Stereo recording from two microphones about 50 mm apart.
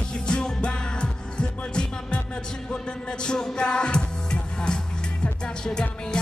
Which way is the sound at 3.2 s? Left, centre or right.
Centre.